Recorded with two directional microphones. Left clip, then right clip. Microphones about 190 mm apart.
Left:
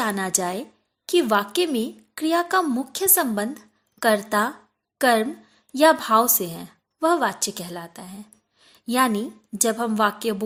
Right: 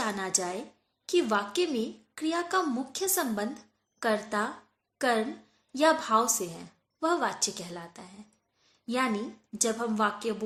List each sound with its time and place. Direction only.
0.0 s a woman's voice: 45° left (ahead or behind)